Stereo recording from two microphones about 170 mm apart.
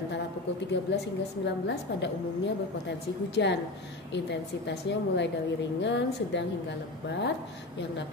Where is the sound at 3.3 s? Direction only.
90° left.